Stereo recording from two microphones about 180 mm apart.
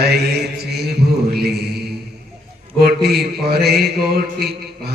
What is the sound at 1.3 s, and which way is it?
Mantra, 60° right (ahead or behind).